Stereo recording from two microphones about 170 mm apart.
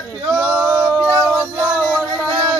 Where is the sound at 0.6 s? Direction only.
15° right (ahead or behind).